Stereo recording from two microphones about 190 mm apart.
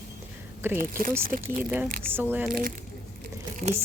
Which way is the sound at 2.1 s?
10° right (ahead or behind).